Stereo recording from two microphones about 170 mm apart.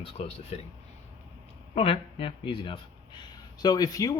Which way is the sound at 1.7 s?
35° left (ahead or behind).